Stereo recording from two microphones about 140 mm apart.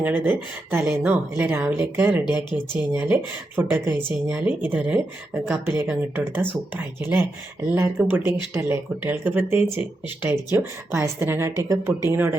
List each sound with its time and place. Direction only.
0.0 s speech: 15° right (ahead or behind)